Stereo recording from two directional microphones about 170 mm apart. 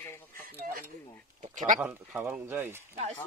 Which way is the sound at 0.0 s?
10° left (ahead or behind).